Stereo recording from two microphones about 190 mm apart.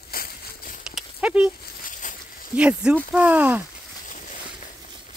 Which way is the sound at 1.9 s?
40° left (ahead or behind).